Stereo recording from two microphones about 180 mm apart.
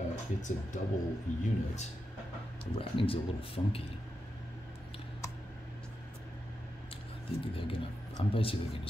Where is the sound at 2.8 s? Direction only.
30° left (ahead or behind).